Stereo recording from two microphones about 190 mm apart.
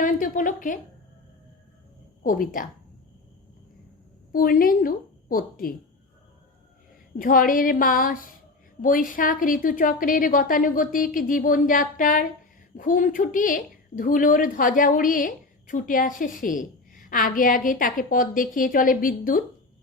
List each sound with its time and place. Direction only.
0.0 s speech: 45° left (ahead or behind)
2.2 s a woman's voice: 45° left (ahead or behind)
4.3 s a woman's voice: 50° left (ahead or behind)
7.2 s a woman's voice: 45° left (ahead or behind)